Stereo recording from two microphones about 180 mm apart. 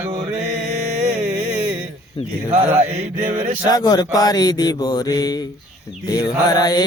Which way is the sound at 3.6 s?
20° left (ahead or behind).